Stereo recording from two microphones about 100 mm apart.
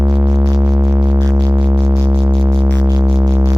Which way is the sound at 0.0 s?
25° right (ahead or behind).